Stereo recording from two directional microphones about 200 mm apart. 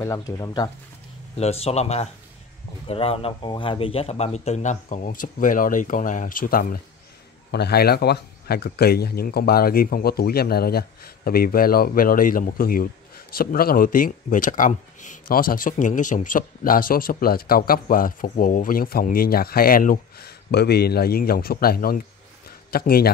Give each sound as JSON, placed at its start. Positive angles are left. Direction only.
{"t": 0.0, "sound": "speech", "side_deg": 15}
{"t": 1.3, "sound": "a man's voice", "side_deg": 30}